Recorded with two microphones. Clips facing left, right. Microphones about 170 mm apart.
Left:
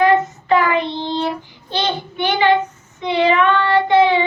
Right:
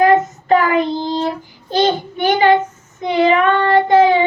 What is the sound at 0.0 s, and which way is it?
Child singing, 40° right (ahead or behind).